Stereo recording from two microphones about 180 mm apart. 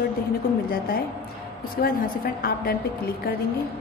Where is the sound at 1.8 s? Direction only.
55° left (ahead or behind).